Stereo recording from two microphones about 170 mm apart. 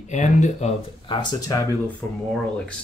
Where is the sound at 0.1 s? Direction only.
45° left (ahead or behind).